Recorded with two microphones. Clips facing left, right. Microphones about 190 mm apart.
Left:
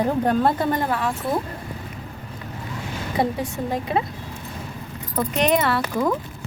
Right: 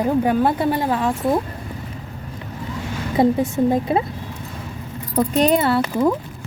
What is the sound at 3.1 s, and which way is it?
Speech, 25° right (ahead or behind).